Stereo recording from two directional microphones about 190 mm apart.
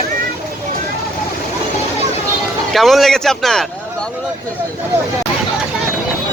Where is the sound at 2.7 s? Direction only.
Centre (ahead or behind).